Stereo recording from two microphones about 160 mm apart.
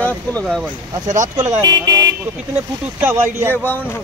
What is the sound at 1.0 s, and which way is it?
Speech, 50° right (ahead or behind).